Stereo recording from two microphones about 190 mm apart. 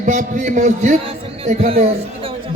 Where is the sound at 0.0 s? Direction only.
40° right (ahead or behind).